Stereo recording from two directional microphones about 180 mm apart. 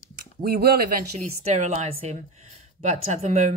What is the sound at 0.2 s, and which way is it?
Speech, 60° right (ahead or behind).